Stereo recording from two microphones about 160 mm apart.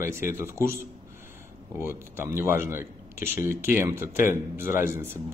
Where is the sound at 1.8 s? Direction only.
15° right (ahead or behind).